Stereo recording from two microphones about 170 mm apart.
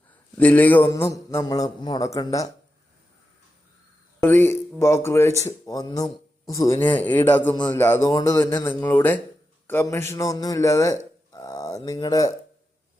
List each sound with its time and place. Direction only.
0.3 s a man's voice: 10° left (ahead or behind)
4.2 s speech: 10° left (ahead or behind)